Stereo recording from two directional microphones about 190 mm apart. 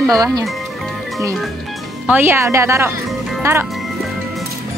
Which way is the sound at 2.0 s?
10° right (ahead or behind).